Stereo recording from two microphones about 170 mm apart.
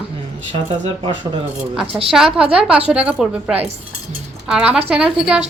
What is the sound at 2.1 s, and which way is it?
Speech, 5° right (ahead or behind).